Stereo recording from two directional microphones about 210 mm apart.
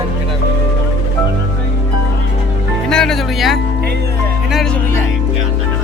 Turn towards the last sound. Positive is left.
turn(degrees=0)  # may be behind; listen again after turning